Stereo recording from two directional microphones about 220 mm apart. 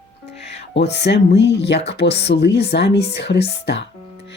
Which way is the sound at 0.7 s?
50° left (ahead or behind).